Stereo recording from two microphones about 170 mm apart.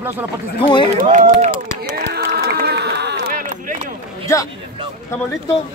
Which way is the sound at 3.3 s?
50° right (ahead or behind).